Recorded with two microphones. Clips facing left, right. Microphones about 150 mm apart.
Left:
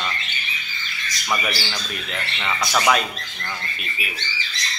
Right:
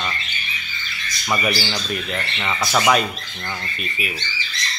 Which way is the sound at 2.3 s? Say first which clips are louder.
Right 1 dB; 5° right (ahead or behind).